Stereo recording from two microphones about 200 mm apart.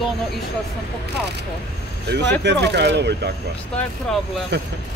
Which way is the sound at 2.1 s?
60° right (ahead or behind).